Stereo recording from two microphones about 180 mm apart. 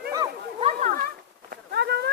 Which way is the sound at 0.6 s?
40° right (ahead or behind).